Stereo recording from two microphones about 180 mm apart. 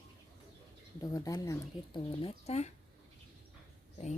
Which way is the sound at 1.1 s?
20° left (ahead or behind).